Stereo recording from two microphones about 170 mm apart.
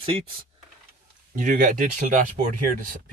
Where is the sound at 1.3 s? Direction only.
50° right (ahead or behind).